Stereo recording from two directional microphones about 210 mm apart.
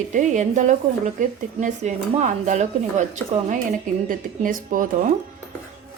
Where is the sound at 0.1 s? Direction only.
35° right (ahead or behind).